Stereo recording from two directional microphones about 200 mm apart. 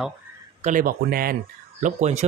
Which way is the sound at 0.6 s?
45° right (ahead or behind).